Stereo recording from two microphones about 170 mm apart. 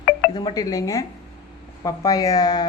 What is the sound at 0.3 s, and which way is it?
Speech, 25° left (ahead or behind).